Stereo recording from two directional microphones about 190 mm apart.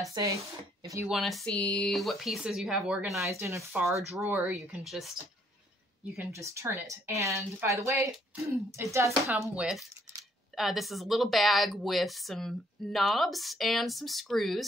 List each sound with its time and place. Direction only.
0.1 s speech: 15° right (ahead or behind)
1.0 s speech: centre (ahead or behind)
3.7 s speech: centre (ahead or behind)
4.1 s speech: 15° right (ahead or behind)
6.1 s a woman's voice: 15° right (ahead or behind)
9.6 s speech: centre (ahead or behind)